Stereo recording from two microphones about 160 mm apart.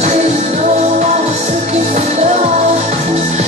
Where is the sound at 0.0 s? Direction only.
45° right (ahead or behind).